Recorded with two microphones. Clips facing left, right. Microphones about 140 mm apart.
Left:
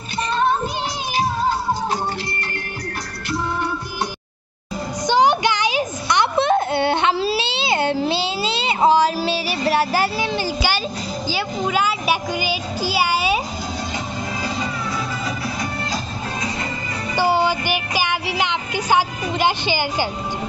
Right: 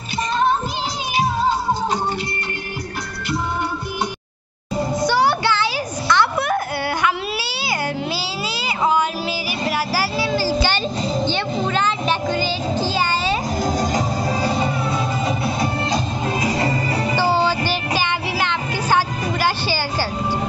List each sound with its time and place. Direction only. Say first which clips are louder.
5.0 s a sound: left 3 dB; 20° left (ahead or behind)
11.6 s music: left 2 dB; 10° left (ahead or behind)
13.7 s music: right 6 dB; 35° right (ahead or behind)
17.1 s music: left 2 dB; 15° left (ahead or behind)